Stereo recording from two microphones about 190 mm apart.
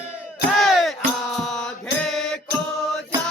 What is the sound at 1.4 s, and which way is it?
Mantra, centre (ahead or behind).